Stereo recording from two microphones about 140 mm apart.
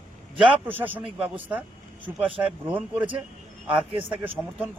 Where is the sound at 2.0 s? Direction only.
10° right (ahead or behind).